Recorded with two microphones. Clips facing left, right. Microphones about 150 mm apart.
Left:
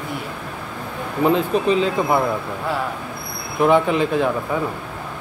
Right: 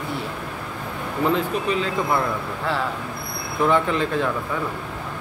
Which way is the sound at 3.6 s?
15° left (ahead or behind).